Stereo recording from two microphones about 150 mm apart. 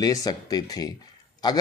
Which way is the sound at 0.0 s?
25° left (ahead or behind).